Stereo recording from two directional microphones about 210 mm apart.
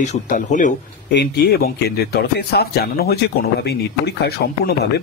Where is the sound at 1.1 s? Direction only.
50° left (ahead or behind).